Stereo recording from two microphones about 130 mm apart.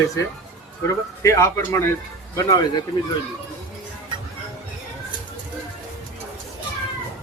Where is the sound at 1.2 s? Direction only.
20° left (ahead or behind).